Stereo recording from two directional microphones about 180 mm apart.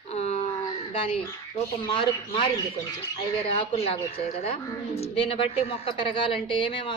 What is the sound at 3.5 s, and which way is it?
A woman's voice, 30° left (ahead or behind).